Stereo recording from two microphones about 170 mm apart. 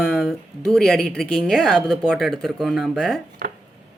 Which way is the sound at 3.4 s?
60° right (ahead or behind).